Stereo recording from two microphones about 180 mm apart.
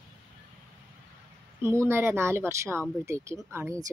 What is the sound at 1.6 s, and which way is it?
Speech, 15° right (ahead or behind).